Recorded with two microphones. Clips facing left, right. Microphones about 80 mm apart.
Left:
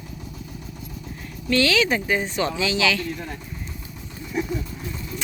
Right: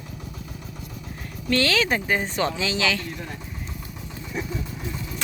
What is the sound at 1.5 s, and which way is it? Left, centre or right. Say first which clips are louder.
Speech: left 2 dB; right.